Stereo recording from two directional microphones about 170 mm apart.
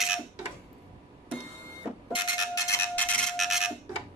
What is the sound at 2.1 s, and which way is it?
Printer, 25° left (ahead or behind).